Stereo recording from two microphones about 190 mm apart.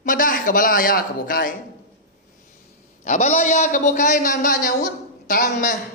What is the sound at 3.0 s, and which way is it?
A man's voice, 40° left (ahead or behind).